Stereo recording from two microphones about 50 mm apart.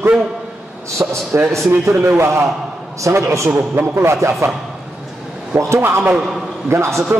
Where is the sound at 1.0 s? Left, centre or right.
Right.